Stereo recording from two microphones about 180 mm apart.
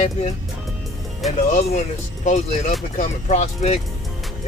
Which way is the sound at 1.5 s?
40° left (ahead or behind).